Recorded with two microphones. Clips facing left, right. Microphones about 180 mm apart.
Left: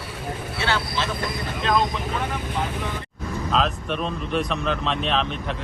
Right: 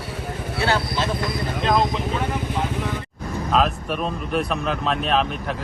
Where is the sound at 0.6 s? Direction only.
40° right (ahead or behind).